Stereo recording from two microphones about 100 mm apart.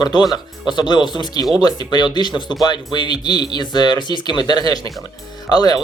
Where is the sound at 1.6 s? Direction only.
45° left (ahead or behind).